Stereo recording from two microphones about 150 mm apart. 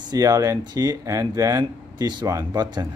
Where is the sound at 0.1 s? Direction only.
25° right (ahead or behind).